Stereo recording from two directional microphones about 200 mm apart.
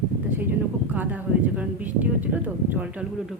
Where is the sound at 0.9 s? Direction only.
10° right (ahead or behind).